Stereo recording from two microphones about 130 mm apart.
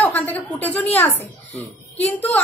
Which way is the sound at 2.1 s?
10° left (ahead or behind).